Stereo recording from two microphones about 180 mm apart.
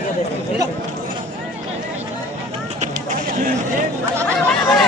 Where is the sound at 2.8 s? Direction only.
45° right (ahead or behind).